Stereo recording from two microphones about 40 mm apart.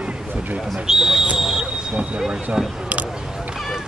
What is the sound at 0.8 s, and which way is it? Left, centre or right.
Speech, centre.